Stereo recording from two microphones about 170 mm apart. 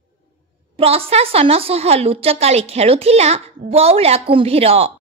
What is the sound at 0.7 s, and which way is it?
A woman's voice, 35° right (ahead or behind).